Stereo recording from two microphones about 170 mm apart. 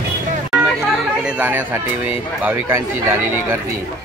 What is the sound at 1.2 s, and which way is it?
A man's voice, 10° right (ahead or behind).